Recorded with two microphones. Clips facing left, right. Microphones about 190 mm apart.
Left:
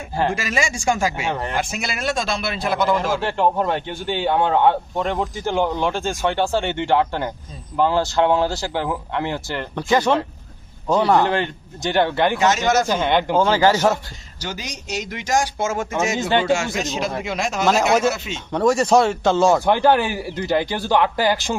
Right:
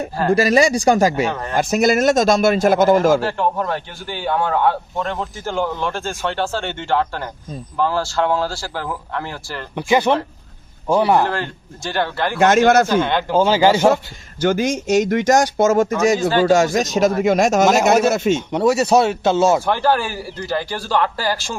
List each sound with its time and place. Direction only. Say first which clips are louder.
0.3 s speech: right 9 dB; 35° right (ahead or behind)
1.3 s a man's voice: left 1 dB; 15° left (ahead or behind)
1.5 s a man's voice: right 10 dB; 45° right (ahead or behind)
3.2 s a man's voice: left 1 dB; 20° left (ahead or behind)
9.7 s speech: right 2 dB; 15° right (ahead or behind)
11.3 s speech: left 3 dB; 20° left (ahead or behind)
12.4 s speech: right 10 dB; 55° right (ahead or behind)
12.9 s a man's voice: right 1 dB; 15° left (ahead or behind)
13.5 s a man's voice: right 3 dB; 25° right (ahead or behind)
14.4 s a man's voice: right 14 dB; 50° right (ahead or behind)
18.5 s speech: left 1 dB; 5° right (ahead or behind)
19.6 s a man's voice: left 2 dB; 20° left (ahead or behind)